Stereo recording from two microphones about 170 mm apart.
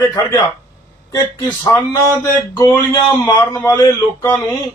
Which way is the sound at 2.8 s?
20° left (ahead or behind).